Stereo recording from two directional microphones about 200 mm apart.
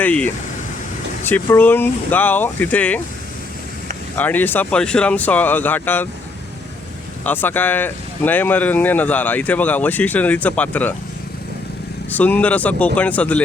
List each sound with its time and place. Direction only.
0.0 s speech: 5° left (ahead or behind)
4.1 s speech: 10° left (ahead or behind)
7.3 s speech: 10° left (ahead or behind)
12.1 s speech: 10° left (ahead or behind)